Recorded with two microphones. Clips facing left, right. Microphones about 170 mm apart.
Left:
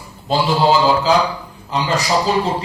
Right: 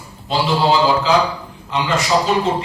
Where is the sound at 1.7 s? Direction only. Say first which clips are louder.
Even; 35° left (ahead or behind).